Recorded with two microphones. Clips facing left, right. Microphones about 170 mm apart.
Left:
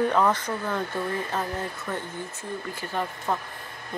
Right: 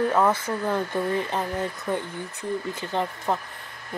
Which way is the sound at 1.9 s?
15° right (ahead or behind).